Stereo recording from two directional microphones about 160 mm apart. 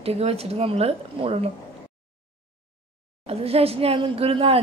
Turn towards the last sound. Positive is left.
turn(degrees=-35)  # may be behind; listen again after turning